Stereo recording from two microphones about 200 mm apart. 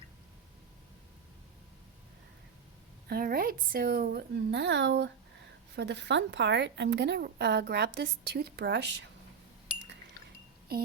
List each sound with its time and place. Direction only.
3.1 s a woman's voice: 50° right (ahead or behind)
9.7 s liquid: 20° left (ahead or behind)